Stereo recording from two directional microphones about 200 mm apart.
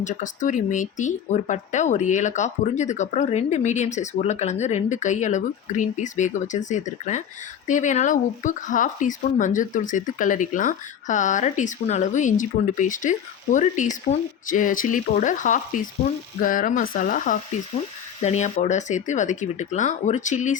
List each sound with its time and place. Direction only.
0.0 s speech: 40° left (ahead or behind)